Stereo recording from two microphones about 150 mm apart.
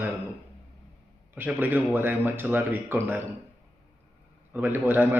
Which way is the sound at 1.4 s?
10° right (ahead or behind).